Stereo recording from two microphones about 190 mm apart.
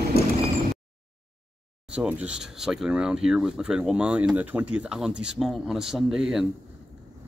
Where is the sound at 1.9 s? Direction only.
5° right (ahead or behind).